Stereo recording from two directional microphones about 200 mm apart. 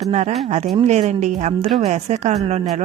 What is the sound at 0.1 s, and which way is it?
A woman's voice, 35° right (ahead or behind).